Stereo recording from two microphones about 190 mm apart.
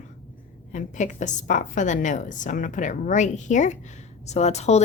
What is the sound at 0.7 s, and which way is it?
Speech, 40° left (ahead or behind).